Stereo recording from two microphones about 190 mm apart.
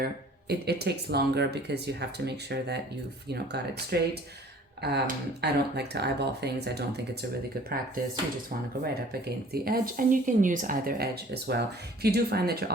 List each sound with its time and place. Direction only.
0.0 s speech: 60° right (ahead or behind)
8.8 s speech: 55° right (ahead or behind)